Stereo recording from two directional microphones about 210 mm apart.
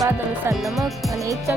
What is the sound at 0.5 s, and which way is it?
Music, centre (ahead or behind).